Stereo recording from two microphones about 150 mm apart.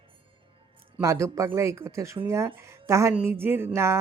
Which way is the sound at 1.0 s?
20° right (ahead or behind).